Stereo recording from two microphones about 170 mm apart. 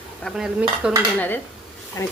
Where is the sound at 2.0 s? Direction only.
20° left (ahead or behind).